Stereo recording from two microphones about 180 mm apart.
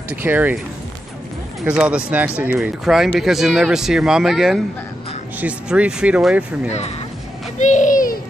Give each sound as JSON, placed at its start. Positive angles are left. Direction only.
{"t": 0.1, "sound": "speech", "side_deg": -10}
{"t": 1.6, "sound": "speech", "side_deg": -5}
{"t": 7.6, "sound": "a sound", "side_deg": 45}